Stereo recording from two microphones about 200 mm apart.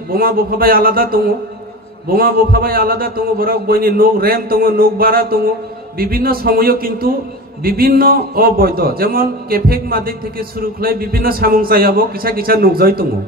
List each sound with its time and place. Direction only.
0.1 s a man's voice: 45° right (ahead or behind)